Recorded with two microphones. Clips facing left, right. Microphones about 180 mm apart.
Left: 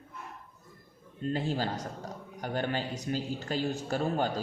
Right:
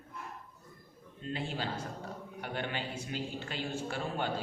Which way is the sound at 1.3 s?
40° left (ahead or behind).